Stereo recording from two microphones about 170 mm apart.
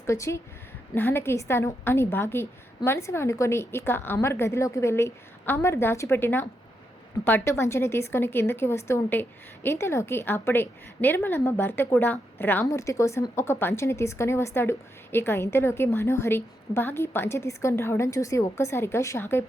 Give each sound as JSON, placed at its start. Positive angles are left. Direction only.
{"t": 0.0, "sound": "a woman's voice", "side_deg": 15}